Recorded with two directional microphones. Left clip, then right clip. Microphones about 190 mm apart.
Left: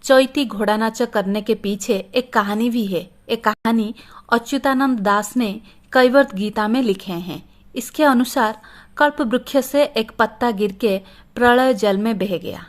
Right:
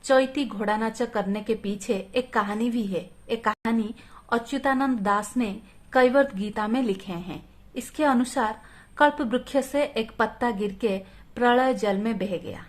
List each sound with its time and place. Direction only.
0.0 s a woman's voice: 35° left (ahead or behind)